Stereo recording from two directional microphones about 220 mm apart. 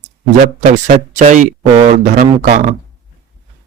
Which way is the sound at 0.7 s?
35° right (ahead or behind).